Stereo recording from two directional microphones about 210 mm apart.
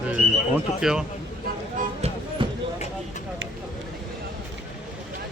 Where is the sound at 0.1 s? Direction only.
5° right (ahead or behind).